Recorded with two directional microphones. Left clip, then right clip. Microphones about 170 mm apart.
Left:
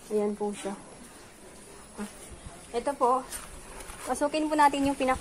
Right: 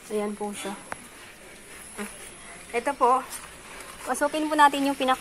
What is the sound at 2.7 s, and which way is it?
Speech, 20° right (ahead or behind).